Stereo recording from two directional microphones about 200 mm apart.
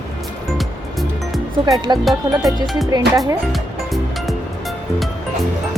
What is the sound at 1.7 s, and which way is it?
Speech, 20° right (ahead or behind).